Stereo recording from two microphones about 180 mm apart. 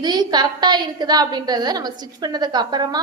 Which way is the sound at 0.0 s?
20° right (ahead or behind).